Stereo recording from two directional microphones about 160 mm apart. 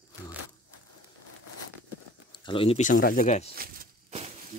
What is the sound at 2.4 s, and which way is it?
Speech, 35° left (ahead or behind).